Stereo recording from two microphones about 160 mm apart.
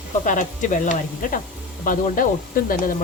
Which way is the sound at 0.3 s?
50° left (ahead or behind).